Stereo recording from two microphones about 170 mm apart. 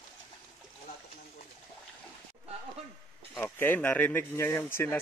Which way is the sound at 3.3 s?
10° left (ahead or behind).